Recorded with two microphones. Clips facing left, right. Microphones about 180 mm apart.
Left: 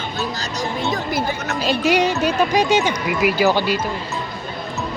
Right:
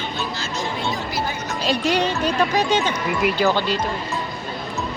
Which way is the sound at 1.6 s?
5° left (ahead or behind).